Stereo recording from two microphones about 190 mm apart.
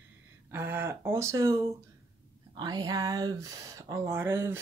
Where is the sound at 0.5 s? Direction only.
10° right (ahead or behind).